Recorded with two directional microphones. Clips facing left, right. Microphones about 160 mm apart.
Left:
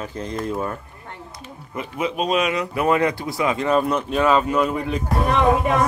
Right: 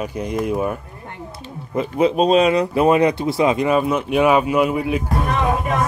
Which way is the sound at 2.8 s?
20° right (ahead or behind).